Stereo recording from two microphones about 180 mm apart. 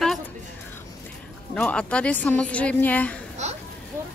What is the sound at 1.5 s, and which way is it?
Speech, 5° left (ahead or behind).